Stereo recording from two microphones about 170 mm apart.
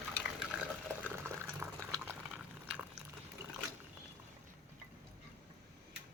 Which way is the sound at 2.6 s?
10° right (ahead or behind).